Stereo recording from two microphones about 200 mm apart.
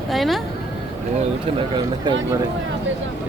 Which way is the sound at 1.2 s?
25° right (ahead or behind).